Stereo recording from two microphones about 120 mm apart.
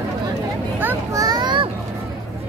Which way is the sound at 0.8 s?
25° right (ahead or behind).